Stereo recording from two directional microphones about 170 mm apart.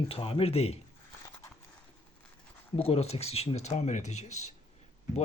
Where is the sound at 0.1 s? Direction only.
35° left (ahead or behind).